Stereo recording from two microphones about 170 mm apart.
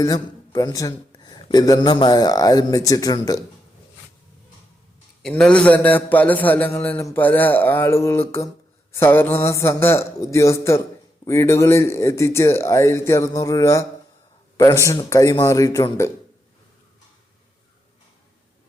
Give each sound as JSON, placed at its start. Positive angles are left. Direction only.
{"t": 0.0, "sound": "speech", "side_deg": 20}
{"t": 5.2, "sound": "a man's voice", "side_deg": 5}